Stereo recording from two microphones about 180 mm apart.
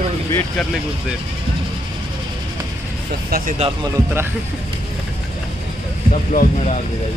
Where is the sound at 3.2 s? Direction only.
55° right (ahead or behind).